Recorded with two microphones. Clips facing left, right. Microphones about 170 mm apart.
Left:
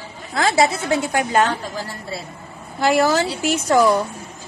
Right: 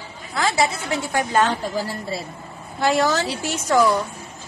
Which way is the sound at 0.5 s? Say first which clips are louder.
Left 4 dB; 20° left (ahead or behind).